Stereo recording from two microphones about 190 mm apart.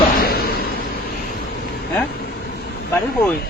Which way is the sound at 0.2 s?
55° left (ahead or behind).